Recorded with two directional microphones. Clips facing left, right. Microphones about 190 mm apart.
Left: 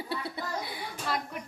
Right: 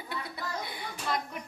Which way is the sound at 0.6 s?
5° left (ahead or behind).